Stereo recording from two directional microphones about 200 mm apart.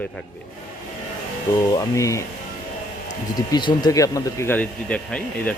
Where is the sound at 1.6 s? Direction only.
15° left (ahead or behind).